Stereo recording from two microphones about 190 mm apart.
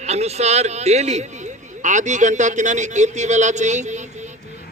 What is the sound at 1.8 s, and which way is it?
Speech, 40° right (ahead or behind).